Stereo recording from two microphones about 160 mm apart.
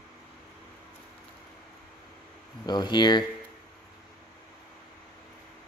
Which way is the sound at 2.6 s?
25° left (ahead or behind).